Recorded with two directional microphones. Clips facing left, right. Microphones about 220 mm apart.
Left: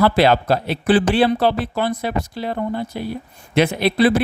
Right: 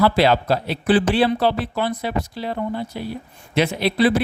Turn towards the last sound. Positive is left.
turn(degrees=50)  # may be behind; listen again after turning